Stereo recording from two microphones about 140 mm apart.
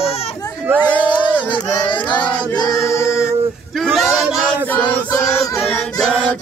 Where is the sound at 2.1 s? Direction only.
30° left (ahead or behind).